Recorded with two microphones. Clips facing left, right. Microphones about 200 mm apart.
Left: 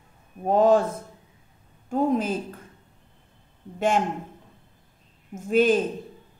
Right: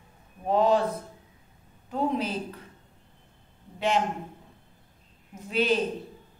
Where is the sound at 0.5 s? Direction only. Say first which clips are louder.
Left 4 dB; 45° left (ahead or behind).